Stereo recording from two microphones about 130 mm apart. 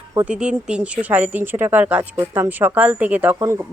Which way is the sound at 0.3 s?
10° right (ahead or behind).